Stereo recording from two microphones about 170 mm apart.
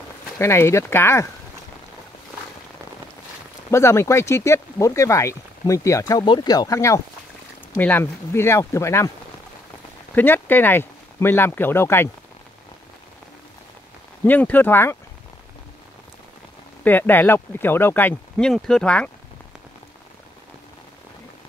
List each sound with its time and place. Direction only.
0.4 s speech: 15° left (ahead or behind)
3.7 s speech: 15° left (ahead or behind)
10.1 s speech: 10° left (ahead or behind)
14.2 s speech: 10° left (ahead or behind)
16.8 s speech: 10° left (ahead or behind)